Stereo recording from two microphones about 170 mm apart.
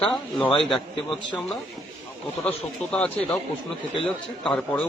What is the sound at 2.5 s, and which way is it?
Speech, 5° left (ahead or behind).